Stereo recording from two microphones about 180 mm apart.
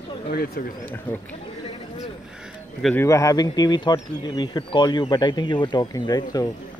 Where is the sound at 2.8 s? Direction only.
15° left (ahead or behind).